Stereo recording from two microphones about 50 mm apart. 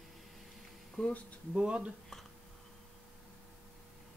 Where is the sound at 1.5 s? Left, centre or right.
Right.